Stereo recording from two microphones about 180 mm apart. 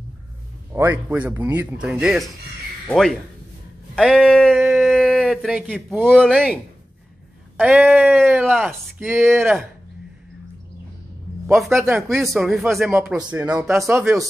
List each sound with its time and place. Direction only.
0.7 s speech: 10° right (ahead or behind)
11.4 s speech: centre (ahead or behind)